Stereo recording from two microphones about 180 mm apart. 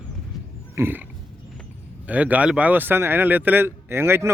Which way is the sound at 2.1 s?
10° right (ahead or behind).